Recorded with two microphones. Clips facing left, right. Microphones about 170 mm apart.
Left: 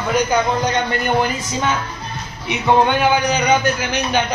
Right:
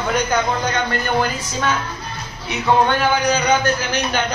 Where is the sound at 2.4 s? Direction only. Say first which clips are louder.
Left 1 dB; 15° left (ahead or behind).